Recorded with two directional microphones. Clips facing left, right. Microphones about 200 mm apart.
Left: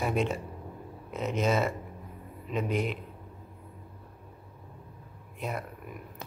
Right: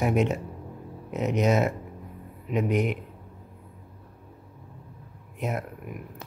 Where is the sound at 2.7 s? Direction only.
20° right (ahead or behind).